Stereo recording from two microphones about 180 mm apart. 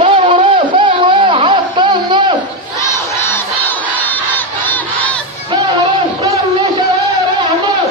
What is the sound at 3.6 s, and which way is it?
Crowd, 10° left (ahead or behind).